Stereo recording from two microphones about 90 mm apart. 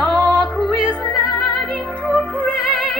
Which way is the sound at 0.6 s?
10° right (ahead or behind).